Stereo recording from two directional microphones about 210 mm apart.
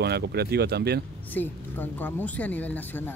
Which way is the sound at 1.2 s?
10° left (ahead or behind).